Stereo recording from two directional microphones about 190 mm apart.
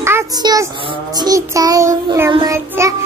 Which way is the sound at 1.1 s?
20° right (ahead or behind).